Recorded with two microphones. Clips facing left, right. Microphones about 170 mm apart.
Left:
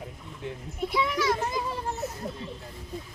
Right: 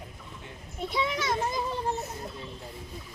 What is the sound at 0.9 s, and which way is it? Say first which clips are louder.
Speech: left 3 dB; 25° right (ahead or behind).